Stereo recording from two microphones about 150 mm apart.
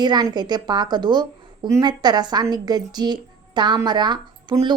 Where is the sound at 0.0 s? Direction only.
25° right (ahead or behind).